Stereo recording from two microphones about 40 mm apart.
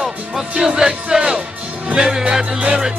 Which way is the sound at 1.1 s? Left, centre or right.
Right.